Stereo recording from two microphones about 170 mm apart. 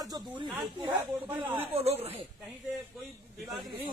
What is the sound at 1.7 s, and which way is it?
Speech, 35° right (ahead or behind).